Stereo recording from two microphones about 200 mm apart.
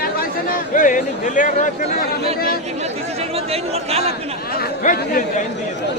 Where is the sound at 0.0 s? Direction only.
45° left (ahead or behind).